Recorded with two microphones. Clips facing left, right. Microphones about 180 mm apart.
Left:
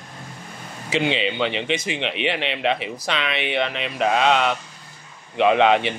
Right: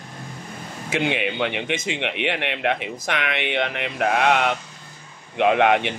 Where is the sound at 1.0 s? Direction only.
15° right (ahead or behind).